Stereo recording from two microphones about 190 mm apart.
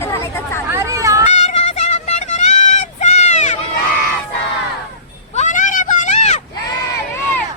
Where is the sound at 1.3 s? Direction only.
35° left (ahead or behind).